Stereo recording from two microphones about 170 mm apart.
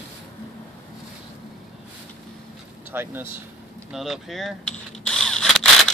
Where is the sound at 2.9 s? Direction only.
10° right (ahead or behind).